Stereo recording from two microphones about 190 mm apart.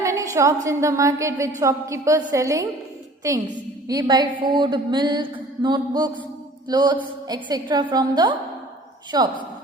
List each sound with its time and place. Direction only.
0.0 s a woman's voice: 15° right (ahead or behind)